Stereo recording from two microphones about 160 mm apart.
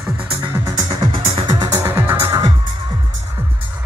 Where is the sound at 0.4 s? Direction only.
20° right (ahead or behind).